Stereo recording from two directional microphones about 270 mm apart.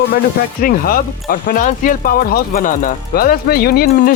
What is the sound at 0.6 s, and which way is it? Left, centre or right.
Speech, left.